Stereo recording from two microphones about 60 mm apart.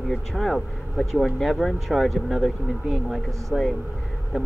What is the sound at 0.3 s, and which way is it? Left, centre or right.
Speech, centre.